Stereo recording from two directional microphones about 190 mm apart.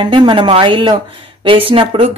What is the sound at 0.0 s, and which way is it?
Speech, 25° right (ahead or behind).